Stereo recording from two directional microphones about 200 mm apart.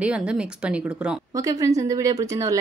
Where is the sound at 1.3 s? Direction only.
15° right (ahead or behind).